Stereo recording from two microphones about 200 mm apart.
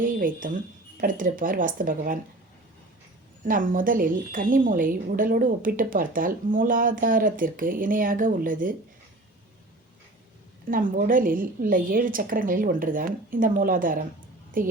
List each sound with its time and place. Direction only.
0.0 s speech: 45° right (ahead or behind)
3.4 s speech: 45° right (ahead or behind)
10.7 s speech: 45° right (ahead or behind)